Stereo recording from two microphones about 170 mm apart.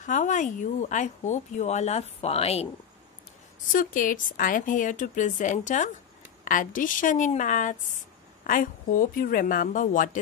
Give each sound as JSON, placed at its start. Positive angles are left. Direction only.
{"t": 0.0, "sound": "speech", "side_deg": 45}
{"t": 3.7, "sound": "speech", "side_deg": 55}